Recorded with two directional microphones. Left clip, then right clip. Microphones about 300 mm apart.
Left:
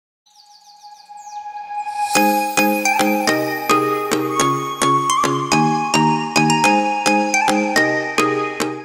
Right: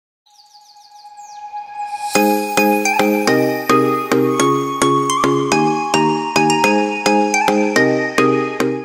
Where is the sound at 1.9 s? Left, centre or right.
Centre.